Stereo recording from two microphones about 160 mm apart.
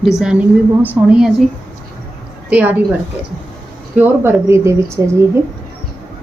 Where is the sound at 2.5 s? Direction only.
10° right (ahead or behind).